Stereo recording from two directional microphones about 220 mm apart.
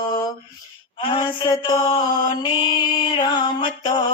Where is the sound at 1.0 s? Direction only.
25° left (ahead or behind).